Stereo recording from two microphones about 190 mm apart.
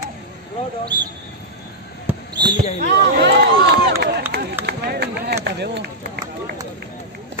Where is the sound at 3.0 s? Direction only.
60° right (ahead or behind).